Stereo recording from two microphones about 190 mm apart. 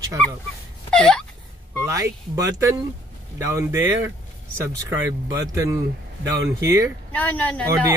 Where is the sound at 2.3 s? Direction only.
20° right (ahead or behind).